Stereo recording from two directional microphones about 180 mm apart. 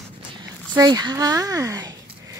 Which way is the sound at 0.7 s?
20° right (ahead or behind).